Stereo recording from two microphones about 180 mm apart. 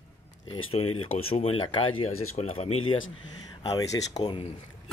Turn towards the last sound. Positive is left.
turn(degrees=25)  # may be behind; listen again after turning